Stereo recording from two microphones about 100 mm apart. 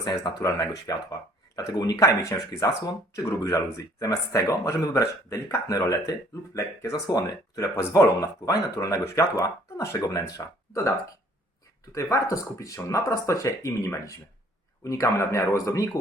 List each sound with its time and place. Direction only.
0.0 s speech: 40° left (ahead or behind)